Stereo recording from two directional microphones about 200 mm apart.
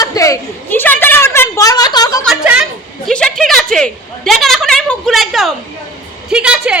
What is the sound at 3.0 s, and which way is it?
A woman's voice, 5° left (ahead or behind).